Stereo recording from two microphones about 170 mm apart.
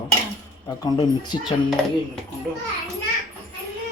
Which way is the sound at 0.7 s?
20° left (ahead or behind).